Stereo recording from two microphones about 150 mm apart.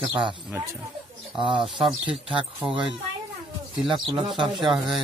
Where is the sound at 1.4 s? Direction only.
35° right (ahead or behind).